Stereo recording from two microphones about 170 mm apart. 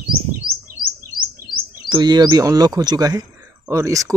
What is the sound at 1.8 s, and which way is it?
Speech, 25° right (ahead or behind).